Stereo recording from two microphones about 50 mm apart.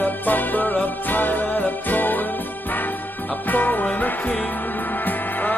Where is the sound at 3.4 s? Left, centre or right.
Left.